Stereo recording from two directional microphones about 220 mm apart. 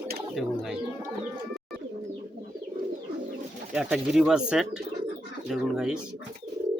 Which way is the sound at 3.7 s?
5° right (ahead or behind).